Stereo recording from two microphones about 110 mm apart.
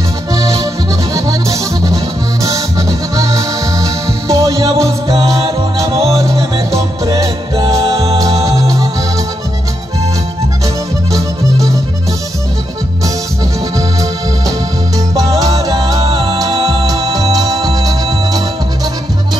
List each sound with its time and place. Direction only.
0.3 s accordion: 30° right (ahead or behind)
1.1 s music: 30° right (ahead or behind)
3.2 s music: 30° right (ahead or behind)
7.1 s music: 35° right (ahead or behind)
11.1 s music: 30° right (ahead or behind)
15.1 s music: 35° right (ahead or behind)